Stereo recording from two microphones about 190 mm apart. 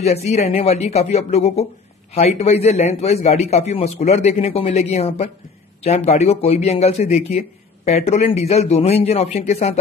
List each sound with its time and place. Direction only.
0.0 s a man's voice: 35° left (ahead or behind)